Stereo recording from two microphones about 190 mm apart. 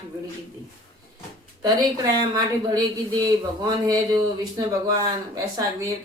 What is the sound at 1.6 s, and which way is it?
Speech, 20° right (ahead or behind).